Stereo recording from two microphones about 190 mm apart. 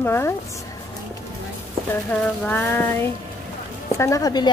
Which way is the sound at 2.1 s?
5° left (ahead or behind).